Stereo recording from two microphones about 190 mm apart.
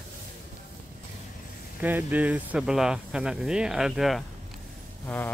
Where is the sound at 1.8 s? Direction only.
10° right (ahead or behind).